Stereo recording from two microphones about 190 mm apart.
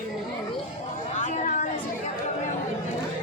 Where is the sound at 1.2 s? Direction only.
40° left (ahead or behind).